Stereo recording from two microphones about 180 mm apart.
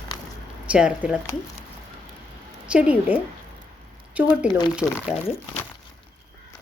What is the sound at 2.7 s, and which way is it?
Speech, 5° right (ahead or behind).